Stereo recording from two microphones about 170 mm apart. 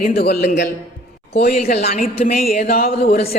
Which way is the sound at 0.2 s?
65° left (ahead or behind).